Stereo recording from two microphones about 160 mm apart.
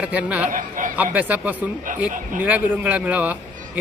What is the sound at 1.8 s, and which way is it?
Speech, 55° right (ahead or behind).